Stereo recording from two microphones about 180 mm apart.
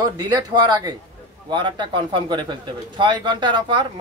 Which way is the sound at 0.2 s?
20° right (ahead or behind).